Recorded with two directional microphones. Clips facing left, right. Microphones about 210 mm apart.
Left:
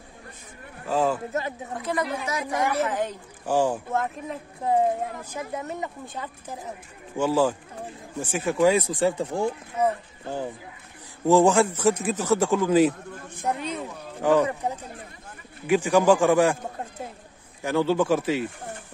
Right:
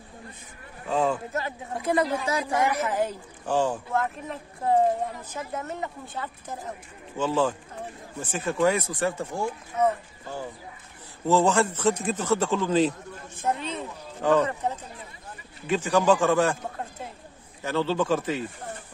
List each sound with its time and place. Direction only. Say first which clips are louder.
0.8 s speech: left 1 dB; centre (ahead or behind)
1.8 s a woman's voice: right 4 dB; 25° right (ahead or behind)
2.9 s a woman's voice: right 1 dB; 10° right (ahead or behind)
3.4 s speech: left 2 dB; 10° left (ahead or behind)
17.6 s speech: left 3 dB; 10° left (ahead or behind)